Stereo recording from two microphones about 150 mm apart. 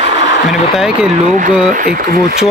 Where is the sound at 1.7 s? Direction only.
70° right (ahead or behind).